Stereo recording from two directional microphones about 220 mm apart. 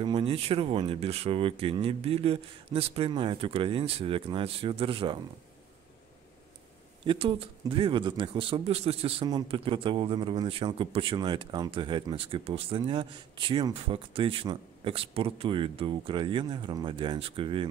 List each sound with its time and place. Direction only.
0.0 s a man's voice: 25° right (ahead or behind)
7.1 s a man's voice: 25° right (ahead or behind)